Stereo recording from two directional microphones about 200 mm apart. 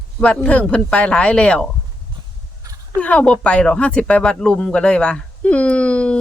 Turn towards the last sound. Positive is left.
turn(degrees=5)  # may be behind; listen again after turning